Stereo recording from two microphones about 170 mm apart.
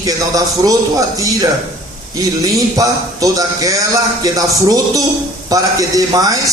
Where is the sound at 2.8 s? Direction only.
20° right (ahead or behind).